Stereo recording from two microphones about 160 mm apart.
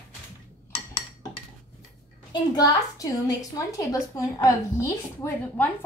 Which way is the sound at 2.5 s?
25° left (ahead or behind).